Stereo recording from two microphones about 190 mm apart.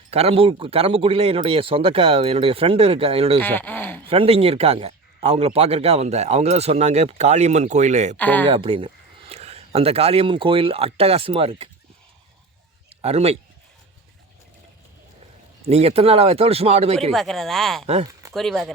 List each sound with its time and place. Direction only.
0.1 s a man's voice: 30° right (ahead or behind)
3.4 s speech: 10° left (ahead or behind)
4.1 s a man's voice: 30° right (ahead or behind)
8.1 s speech: 10° left (ahead or behind)
8.4 s a man's voice: 30° right (ahead or behind)
13.0 s speech: 35° right (ahead or behind)
15.7 s a man's voice: 30° right (ahead or behind)
17.1 s speech: centre (ahead or behind)
18.0 s a sound: 20° right (ahead or behind)
18.3 s speech: centre (ahead or behind)